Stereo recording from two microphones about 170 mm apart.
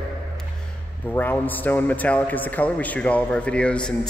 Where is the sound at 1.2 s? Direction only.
10° left (ahead or behind).